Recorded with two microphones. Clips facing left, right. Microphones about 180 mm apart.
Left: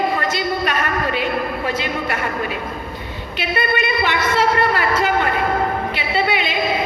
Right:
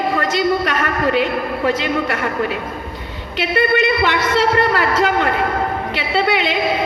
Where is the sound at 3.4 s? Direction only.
90° right.